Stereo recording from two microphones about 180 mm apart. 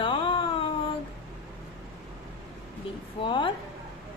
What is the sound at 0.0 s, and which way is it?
Music, 30° left (ahead or behind).